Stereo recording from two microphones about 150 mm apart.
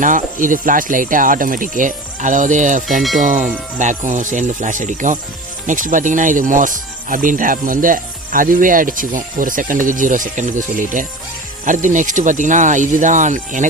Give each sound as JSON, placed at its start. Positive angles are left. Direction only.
{"t": 0.0, "sound": "speech", "side_deg": -60}